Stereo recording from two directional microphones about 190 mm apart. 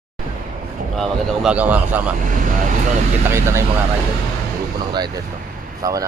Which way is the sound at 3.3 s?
15° right (ahead or behind).